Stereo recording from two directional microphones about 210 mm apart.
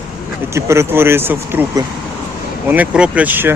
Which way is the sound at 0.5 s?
15° right (ahead or behind).